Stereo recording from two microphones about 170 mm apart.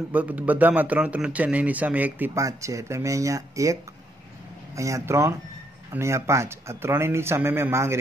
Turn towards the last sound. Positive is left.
turn(degrees=-15)  # may be behind; listen again after turning